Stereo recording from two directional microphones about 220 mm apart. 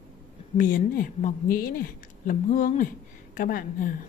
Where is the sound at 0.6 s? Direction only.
40° left (ahead or behind).